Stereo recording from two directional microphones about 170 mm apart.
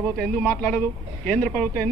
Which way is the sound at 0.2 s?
5° left (ahead or behind).